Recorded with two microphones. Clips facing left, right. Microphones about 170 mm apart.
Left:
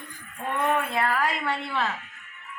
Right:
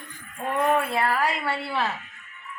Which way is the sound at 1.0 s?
10° right (ahead or behind).